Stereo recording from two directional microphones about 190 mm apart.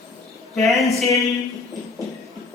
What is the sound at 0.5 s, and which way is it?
Speech, centre (ahead or behind).